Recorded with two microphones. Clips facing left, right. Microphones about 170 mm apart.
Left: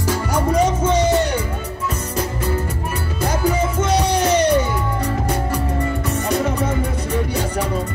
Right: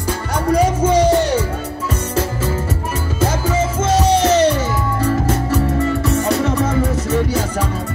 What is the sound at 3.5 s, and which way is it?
Music, 90° right.